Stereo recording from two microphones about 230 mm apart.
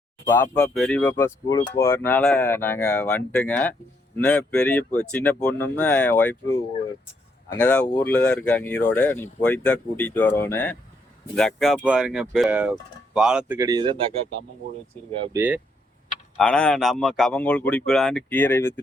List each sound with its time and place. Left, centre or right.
0.3 s speech: centre
7.6 s speech: centre
13.6 s speech: centre
15.3 s speech: centre
16.4 s speech: centre